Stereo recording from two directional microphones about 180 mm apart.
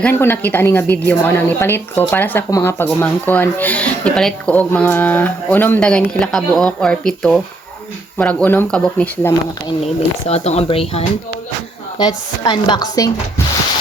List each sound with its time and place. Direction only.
0.0 s a woman's voice: 10° left (ahead or behind)
9.8 s speech: 35° left (ahead or behind)
11.9 s chopping: 25° left (ahead or behind)